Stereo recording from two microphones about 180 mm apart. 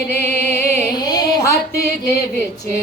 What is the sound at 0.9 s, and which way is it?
Music, 20° left (ahead or behind).